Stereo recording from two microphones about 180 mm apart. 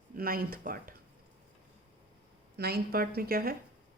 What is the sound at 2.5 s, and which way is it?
A woman's voice, 60° right (ahead or behind).